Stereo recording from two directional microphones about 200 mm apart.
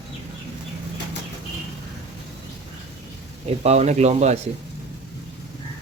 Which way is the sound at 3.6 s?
35° right (ahead or behind).